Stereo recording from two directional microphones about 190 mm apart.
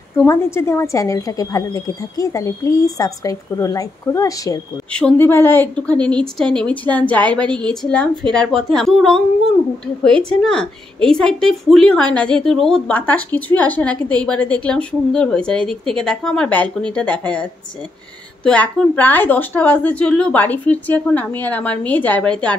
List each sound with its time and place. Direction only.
0.2 s a woman's voice: 15° left (ahead or behind)